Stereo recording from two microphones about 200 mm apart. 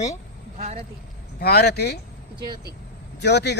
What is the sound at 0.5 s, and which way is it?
Speech, 40° right (ahead or behind).